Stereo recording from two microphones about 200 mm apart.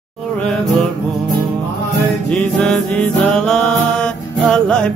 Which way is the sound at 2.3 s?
5° left (ahead or behind).